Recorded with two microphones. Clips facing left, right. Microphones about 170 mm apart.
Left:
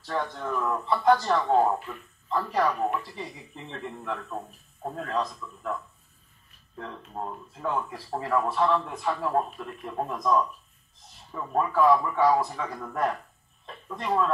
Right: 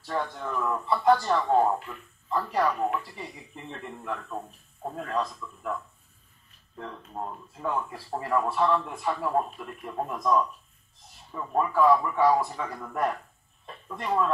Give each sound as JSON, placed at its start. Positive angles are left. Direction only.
{"t": 0.0, "sound": "speech", "side_deg": -5}
{"t": 6.8, "sound": "speech", "side_deg": 0}